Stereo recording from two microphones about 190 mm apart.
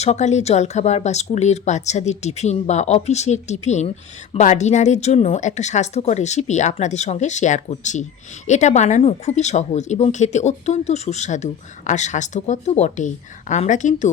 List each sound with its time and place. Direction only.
0.0 s speech: 35° left (ahead or behind)